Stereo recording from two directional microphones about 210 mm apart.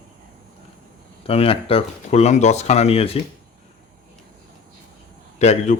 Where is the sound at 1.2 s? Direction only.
25° left (ahead or behind).